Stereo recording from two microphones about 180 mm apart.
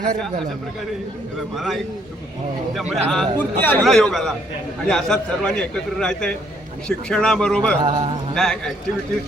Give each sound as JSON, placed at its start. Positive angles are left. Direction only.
{"t": 1.5, "sound": "a man's voice", "side_deg": 0}
{"t": 7.9, "sound": "speech", "side_deg": -35}
{"t": 8.4, "sound": "a man's voice", "side_deg": 5}